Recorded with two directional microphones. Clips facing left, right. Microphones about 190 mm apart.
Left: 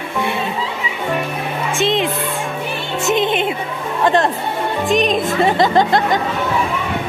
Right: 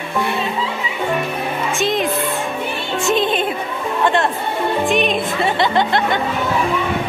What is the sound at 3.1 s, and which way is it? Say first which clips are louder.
Music: left 1 dB; 20° left (ahead or behind).